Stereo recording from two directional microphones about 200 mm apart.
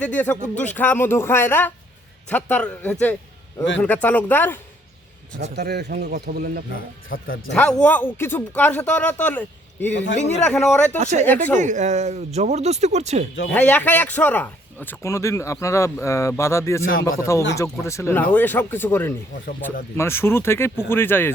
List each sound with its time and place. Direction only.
0.0 s speech: 10° left (ahead or behind)
5.5 s speech: 55° right (ahead or behind)
6.7 s speech: 45° left (ahead or behind)
7.5 s speech: 5° left (ahead or behind)
9.9 s speech: 60° left (ahead or behind)
10.4 s speech: 5° left (ahead or behind)
10.9 s speech: 35° right (ahead or behind)
13.5 s speech: 10° left (ahead or behind)